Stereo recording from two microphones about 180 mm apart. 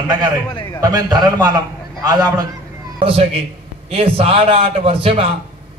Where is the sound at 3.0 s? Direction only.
30° right (ahead or behind).